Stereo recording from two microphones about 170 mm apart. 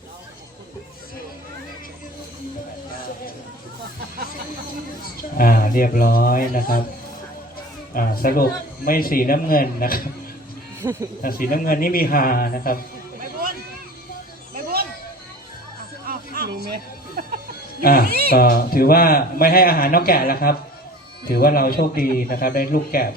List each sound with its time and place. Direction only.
5.4 s speech: 55° left (ahead or behind)
7.9 s speech: 60° left (ahead or behind)
10.8 s speech: 15° right (ahead or behind)
11.2 s speech: 55° left (ahead or behind)
14.5 s a sound: 60° right (ahead or behind)
16.0 s a sound: 60° right (ahead or behind)
17.8 s speech: 60° left (ahead or behind)
18.1 s cat: 60° right (ahead or behind)
18.3 s speech: 60° left (ahead or behind)